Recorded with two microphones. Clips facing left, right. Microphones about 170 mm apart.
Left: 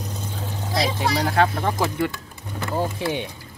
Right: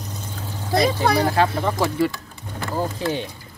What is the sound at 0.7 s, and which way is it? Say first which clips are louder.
Speech: right 5 dB; 55° right (ahead or behind).